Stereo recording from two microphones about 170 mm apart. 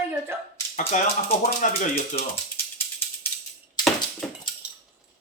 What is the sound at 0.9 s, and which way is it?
Speech, 50° left (ahead or behind).